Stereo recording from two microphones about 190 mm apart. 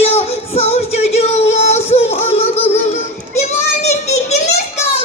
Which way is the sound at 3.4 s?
35° left (ahead or behind).